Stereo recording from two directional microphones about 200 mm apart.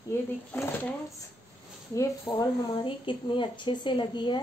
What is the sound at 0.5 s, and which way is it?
Speech, 10° left (ahead or behind).